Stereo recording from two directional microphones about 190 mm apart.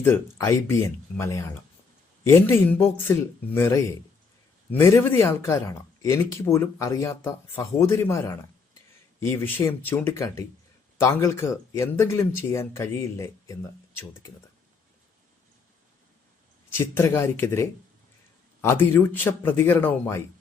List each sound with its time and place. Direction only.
0.0 s speech: 15° left (ahead or behind)
9.2 s speech: 10° left (ahead or behind)
16.7 s speech: 10° left (ahead or behind)